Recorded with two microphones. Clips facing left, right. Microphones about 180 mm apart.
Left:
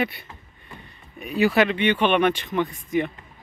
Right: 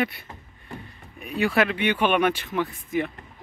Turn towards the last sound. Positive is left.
turn(degrees=-5)  # may be behind; listen again after turning